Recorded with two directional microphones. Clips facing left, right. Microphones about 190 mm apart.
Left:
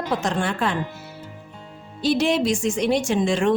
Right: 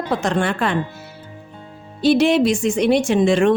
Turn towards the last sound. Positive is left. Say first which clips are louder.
# right 5 dB
turn(degrees=-65)  # may be behind; listen again after turning